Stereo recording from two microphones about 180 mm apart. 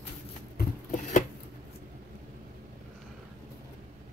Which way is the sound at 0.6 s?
50° left (ahead or behind).